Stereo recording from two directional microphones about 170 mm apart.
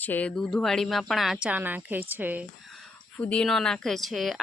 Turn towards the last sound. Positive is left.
turn(degrees=0)  # may be behind; listen again after turning